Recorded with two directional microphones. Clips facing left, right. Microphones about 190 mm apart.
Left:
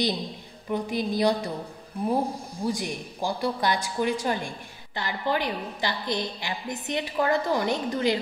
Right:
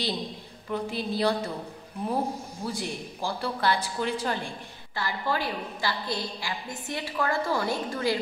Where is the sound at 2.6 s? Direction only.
15° left (ahead or behind).